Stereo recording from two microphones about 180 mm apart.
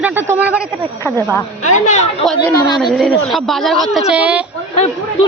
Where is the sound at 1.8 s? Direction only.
45° left (ahead or behind).